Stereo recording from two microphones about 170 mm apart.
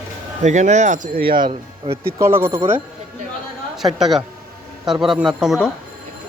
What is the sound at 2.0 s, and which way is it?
Speech, 15° right (ahead or behind).